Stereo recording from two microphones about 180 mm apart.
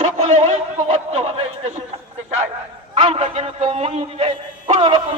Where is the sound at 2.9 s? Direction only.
35° right (ahead or behind).